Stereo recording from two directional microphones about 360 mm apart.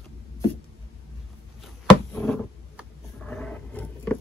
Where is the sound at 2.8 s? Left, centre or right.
Centre.